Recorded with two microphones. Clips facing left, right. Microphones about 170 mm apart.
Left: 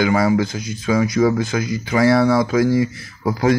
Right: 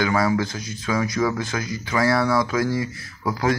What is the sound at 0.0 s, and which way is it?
Speech, 20° left (ahead or behind).